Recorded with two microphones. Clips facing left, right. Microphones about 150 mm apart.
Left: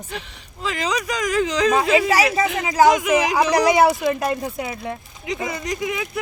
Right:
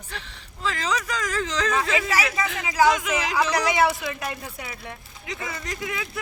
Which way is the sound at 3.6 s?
40° left (ahead or behind).